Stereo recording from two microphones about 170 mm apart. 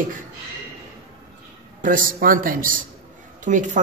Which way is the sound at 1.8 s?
55° right (ahead or behind).